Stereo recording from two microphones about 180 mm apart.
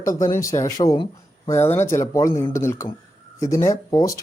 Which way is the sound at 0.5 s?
15° left (ahead or behind).